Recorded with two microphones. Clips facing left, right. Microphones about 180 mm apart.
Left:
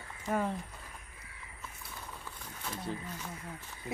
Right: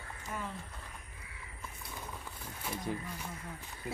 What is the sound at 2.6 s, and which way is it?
Speech, 10° right (ahead or behind).